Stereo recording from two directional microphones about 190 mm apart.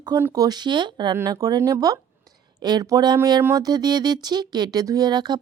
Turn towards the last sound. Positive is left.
turn(degrees=-20)  # may be behind; listen again after turning